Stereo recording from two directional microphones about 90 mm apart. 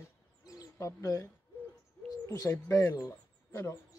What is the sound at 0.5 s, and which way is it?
Bird, 40° left (ahead or behind).